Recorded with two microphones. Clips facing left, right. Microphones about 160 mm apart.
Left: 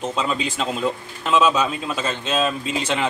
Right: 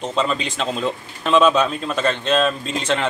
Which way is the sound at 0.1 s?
5° left (ahead or behind).